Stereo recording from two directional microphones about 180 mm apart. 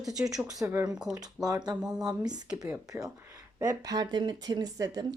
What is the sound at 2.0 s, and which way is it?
Speech, 20° right (ahead or behind).